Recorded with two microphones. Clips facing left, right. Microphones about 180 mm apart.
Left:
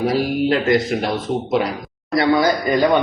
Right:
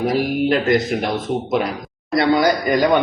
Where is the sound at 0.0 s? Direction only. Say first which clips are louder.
Even; 20° right (ahead or behind).